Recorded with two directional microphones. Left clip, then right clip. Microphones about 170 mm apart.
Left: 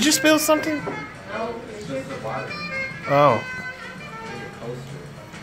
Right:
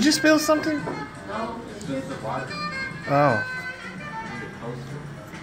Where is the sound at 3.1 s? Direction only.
10° left (ahead or behind).